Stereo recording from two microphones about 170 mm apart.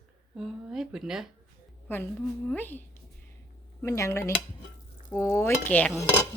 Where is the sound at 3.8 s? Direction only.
15° left (ahead or behind).